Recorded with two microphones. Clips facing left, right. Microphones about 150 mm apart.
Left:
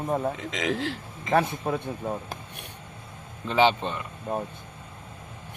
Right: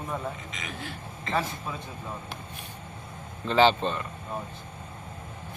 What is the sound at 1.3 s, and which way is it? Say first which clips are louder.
Speech: left 7 dB; 60° left (ahead or behind).